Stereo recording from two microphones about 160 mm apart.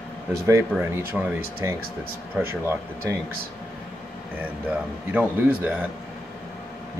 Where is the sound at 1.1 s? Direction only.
5° right (ahead or behind).